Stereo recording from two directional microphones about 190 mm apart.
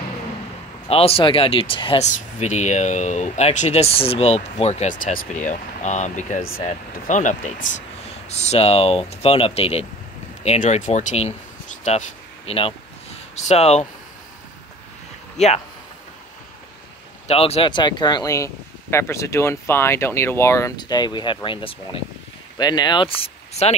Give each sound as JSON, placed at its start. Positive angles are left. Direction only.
{"t": 0.8, "sound": "speech", "side_deg": 30}
{"t": 12.4, "sound": "speech", "side_deg": 30}
{"t": 15.3, "sound": "speech", "side_deg": 35}
{"t": 17.3, "sound": "speech", "side_deg": 30}